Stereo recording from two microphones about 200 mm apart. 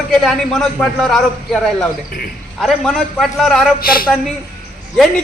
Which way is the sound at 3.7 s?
45° left (ahead or behind).